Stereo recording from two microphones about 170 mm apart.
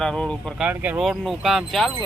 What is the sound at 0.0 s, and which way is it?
Speech, 5° left (ahead or behind).